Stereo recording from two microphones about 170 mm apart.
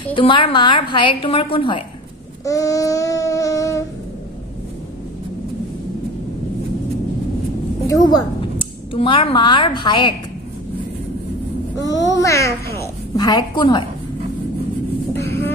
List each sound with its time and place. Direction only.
0.1 s a woman's voice: 30° left (ahead or behind)
2.4 s child singing: 20° left (ahead or behind)
7.8 s a woman's voice: 20° left (ahead or behind)
11.9 s a child's voice: 20° left (ahead or behind)
15.2 s music: 15° left (ahead or behind)